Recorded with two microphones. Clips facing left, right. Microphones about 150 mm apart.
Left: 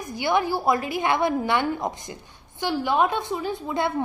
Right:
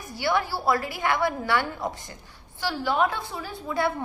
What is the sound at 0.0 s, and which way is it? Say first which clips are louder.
A woman's voice: left 3 dB; 20° left (ahead or behind).